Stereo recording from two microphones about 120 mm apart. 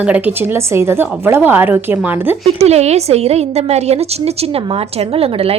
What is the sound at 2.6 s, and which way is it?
A woman's voice, 65° right (ahead or behind).